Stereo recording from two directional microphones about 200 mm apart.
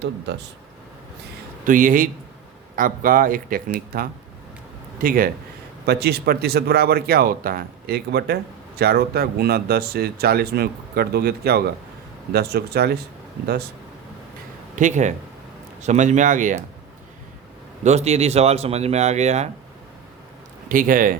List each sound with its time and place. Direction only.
1.6 s speech: 40° right (ahead or behind)
4.9 s speech: 45° right (ahead or behind)
14.8 s speech: 40° right (ahead or behind)
17.8 s speech: 35° right (ahead or behind)
20.7 s speech: 45° right (ahead or behind)